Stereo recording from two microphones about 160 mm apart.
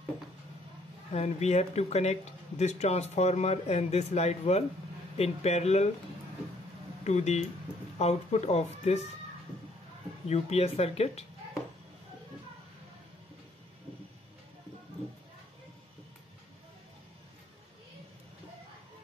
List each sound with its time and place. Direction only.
1.1 s speech: 45° left (ahead or behind)
7.1 s speech: 45° left (ahead or behind)
10.2 s speech: 40° left (ahead or behind)